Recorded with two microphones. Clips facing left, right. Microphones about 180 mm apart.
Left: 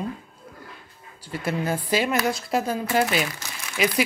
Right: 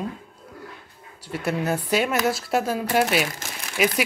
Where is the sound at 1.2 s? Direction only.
Centre (ahead or behind).